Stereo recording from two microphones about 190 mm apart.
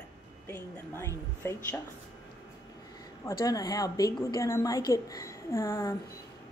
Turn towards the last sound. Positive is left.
turn(degrees=15)  # may be behind; listen again after turning